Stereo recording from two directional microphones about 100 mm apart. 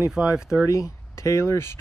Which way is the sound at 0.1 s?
10° right (ahead or behind).